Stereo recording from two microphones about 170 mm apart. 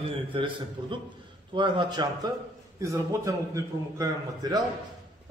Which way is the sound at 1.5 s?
25° right (ahead or behind).